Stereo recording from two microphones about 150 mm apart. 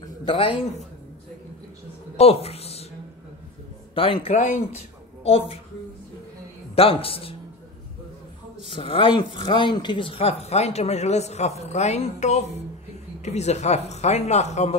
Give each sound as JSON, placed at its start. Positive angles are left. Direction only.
{"t": 0.0, "sound": "a man's voice", "side_deg": 30}
{"t": 2.1, "sound": "a sound", "side_deg": 45}
{"t": 3.9, "sound": "speech", "side_deg": 35}
{"t": 6.7, "sound": "speech", "side_deg": 40}
{"t": 8.6, "sound": "speech", "side_deg": 35}